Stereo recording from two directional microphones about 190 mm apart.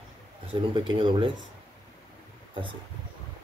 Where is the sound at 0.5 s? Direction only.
25° right (ahead or behind).